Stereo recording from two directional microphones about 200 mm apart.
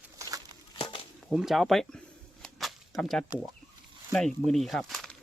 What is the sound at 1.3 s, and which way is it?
Speech, centre (ahead or behind).